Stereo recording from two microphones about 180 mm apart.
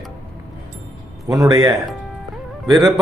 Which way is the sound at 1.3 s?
20° right (ahead or behind).